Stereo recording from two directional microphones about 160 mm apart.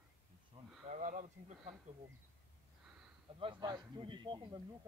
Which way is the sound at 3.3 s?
30° right (ahead or behind).